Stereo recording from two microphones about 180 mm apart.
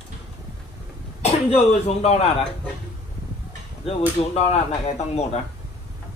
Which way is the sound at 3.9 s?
35° left (ahead or behind).